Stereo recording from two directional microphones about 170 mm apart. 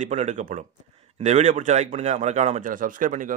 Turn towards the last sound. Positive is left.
turn(degrees=-50)  # may be behind; listen again after turning